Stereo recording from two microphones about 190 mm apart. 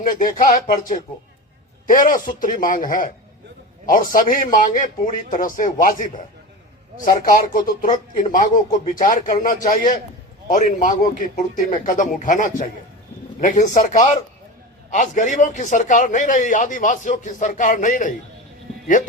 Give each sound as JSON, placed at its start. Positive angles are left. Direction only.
{"t": 0.2, "sound": "a man's voice", "side_deg": 45}